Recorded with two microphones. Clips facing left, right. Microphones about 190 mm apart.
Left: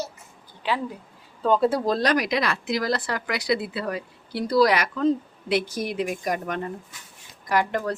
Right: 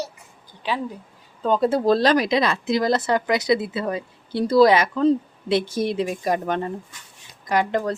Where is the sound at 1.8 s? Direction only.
30° right (ahead or behind).